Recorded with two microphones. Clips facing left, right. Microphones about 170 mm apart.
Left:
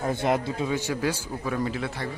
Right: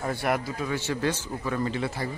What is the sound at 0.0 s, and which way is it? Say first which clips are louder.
A man's voice: left 3 dB; 20° left (ahead or behind).